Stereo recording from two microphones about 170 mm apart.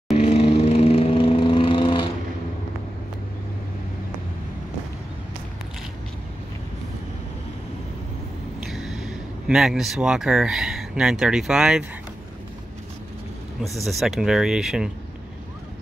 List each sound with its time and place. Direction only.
0.1 s vehicle: 40° left (ahead or behind)
8.5 s speech: centre (ahead or behind)
13.8 s speech: centre (ahead or behind)